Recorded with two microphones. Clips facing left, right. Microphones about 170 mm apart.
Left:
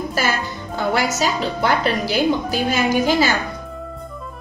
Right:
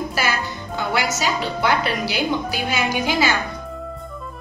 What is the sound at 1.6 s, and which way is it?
A woman's voice, 40° left (ahead or behind).